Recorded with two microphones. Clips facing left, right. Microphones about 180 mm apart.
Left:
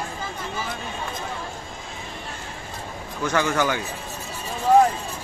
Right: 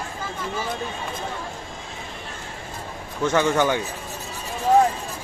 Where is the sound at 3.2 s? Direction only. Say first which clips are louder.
Right 3 dB; 20° right (ahead or behind).